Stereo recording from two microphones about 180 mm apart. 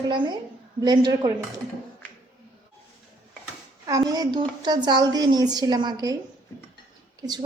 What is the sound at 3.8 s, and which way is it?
A woman's voice, 20° right (ahead or behind).